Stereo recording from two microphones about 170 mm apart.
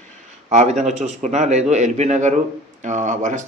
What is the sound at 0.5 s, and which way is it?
Speech, 40° right (ahead or behind).